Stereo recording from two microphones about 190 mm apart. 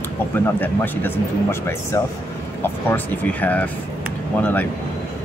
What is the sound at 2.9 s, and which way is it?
Speech, 10° left (ahead or behind).